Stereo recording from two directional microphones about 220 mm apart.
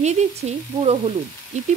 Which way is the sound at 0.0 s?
30° right (ahead or behind).